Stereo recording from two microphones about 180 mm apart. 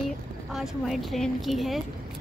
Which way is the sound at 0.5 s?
Centre (ahead or behind).